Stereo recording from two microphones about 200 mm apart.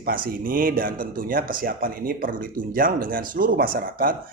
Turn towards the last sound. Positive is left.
turn(degrees=-45)  # may be behind; listen again after turning